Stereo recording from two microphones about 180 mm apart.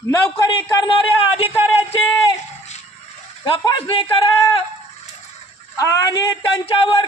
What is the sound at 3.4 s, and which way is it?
Speech, 25° left (ahead or behind).